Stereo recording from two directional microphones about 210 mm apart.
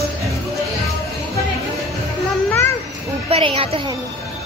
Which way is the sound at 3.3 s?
25° right (ahead or behind).